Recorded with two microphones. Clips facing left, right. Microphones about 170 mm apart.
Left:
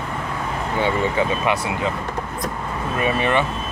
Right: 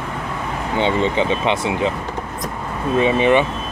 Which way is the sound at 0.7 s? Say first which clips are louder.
Right 3 dB; 25° right (ahead or behind).